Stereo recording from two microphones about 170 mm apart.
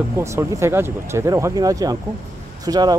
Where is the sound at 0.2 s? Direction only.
15° right (ahead or behind).